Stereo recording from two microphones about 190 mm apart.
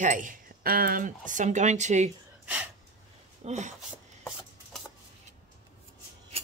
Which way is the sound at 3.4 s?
40° right (ahead or behind).